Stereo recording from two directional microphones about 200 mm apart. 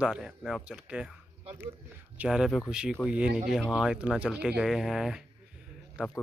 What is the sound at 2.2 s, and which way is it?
Speech, 5° right (ahead or behind).